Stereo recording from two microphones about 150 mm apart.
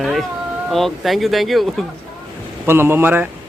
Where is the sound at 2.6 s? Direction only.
15° right (ahead or behind).